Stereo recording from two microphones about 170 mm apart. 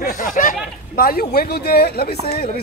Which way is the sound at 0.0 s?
50° left (ahead or behind).